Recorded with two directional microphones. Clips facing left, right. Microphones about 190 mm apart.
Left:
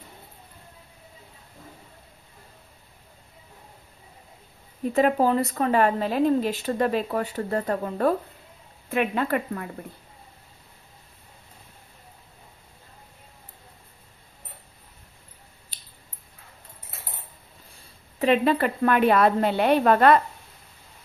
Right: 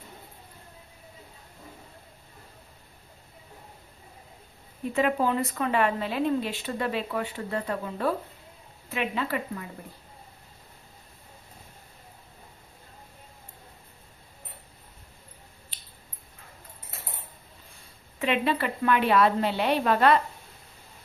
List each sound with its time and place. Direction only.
4.8 s a woman's voice: 40° left (ahead or behind)
15.7 s squish: 40° left (ahead or behind)
18.2 s a woman's voice: 45° left (ahead or behind)